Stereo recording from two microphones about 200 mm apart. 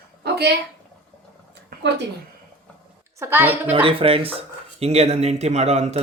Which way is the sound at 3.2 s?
10° right (ahead or behind).